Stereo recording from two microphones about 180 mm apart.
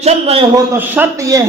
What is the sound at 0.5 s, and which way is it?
Speech, 10° right (ahead or behind).